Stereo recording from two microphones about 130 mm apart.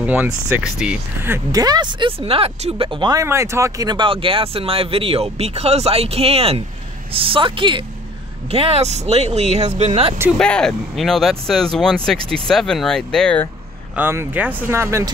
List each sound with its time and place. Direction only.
0.0 s speech: 10° right (ahead or behind)
1.5 s speech: 30° right (ahead or behind)
3.3 s speech: 20° right (ahead or behind); by 10.1 s 55° right (ahead or behind)
10.4 s speech: 5° left (ahead or behind)
13.9 s speech: 20° right (ahead or behind)